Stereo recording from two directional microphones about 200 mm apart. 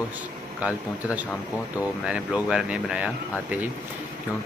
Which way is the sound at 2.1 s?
5° right (ahead or behind).